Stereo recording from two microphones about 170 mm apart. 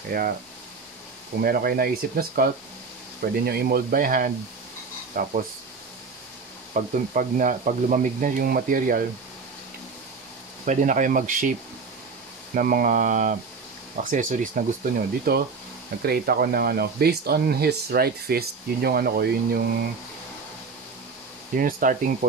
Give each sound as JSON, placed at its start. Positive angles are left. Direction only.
{"t": 0.1, "sound": "speech", "side_deg": -60}
{"t": 1.4, "sound": "speech", "side_deg": -60}
{"t": 6.7, "sound": "speech", "side_deg": -50}
{"t": 10.6, "sound": "speech", "side_deg": -45}
{"t": 12.5, "sound": "speech", "side_deg": -55}
{"t": 21.5, "sound": "speech", "side_deg": -55}